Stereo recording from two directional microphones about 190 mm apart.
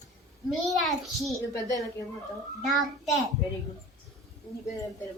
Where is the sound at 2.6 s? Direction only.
Centre (ahead or behind).